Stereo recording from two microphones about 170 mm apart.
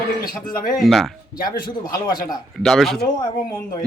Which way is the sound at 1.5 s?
25° left (ahead or behind).